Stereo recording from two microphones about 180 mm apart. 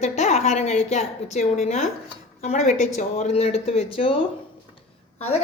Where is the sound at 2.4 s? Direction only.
40° left (ahead or behind).